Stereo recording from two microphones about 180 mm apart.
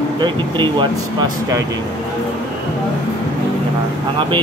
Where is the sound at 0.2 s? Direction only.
25° right (ahead or behind).